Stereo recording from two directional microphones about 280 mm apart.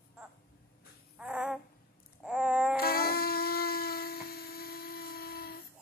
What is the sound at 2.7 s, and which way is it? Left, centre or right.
Shofar, left.